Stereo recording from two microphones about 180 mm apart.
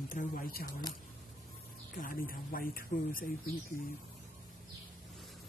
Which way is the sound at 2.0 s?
50° left (ahead or behind).